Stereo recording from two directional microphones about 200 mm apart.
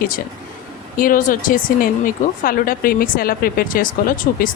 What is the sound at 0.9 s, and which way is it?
Speech, 45° left (ahead or behind).